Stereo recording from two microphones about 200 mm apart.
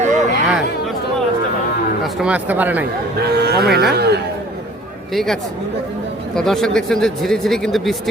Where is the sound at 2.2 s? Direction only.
5° right (ahead or behind).